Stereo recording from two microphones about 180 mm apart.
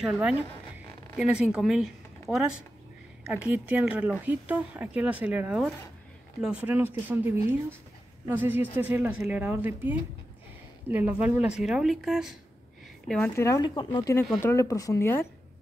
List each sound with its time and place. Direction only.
0.0 s speech: 5° right (ahead or behind)
13.4 s speech: 20° left (ahead or behind)